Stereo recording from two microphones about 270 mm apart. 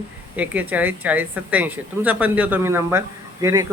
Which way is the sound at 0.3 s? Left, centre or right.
Centre.